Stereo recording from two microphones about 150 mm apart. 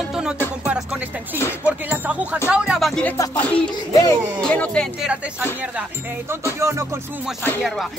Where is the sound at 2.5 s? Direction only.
5° right (ahead or behind).